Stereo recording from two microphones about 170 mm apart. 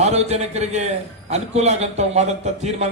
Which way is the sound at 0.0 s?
40° right (ahead or behind).